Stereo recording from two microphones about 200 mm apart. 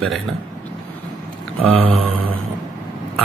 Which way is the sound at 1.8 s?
30° right (ahead or behind).